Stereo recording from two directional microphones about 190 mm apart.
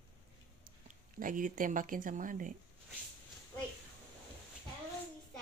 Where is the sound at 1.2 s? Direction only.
45° right (ahead or behind).